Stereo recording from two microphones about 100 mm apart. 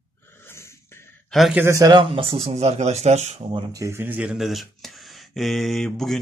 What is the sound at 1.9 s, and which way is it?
Speech, 60° right (ahead or behind).